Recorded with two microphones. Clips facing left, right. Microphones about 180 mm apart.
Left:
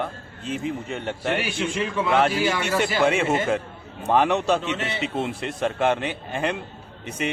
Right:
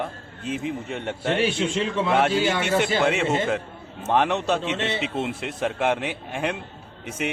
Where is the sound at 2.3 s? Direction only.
25° right (ahead or behind).